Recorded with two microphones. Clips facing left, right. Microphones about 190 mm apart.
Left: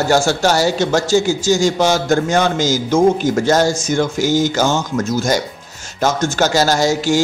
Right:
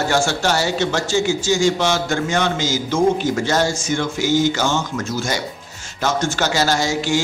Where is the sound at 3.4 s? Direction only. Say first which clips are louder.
Left 5 dB; 45° left (ahead or behind).